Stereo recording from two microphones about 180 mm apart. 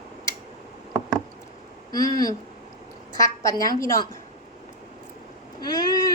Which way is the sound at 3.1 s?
20° left (ahead or behind).